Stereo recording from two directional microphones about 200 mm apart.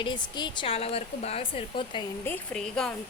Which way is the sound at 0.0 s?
20° left (ahead or behind).